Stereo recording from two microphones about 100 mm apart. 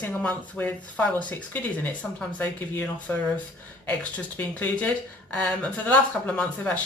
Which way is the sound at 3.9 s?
15° left (ahead or behind).